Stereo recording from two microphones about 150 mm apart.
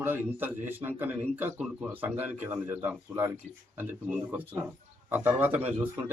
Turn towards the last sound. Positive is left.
turn(degrees=-15)  # may be behind; listen again after turning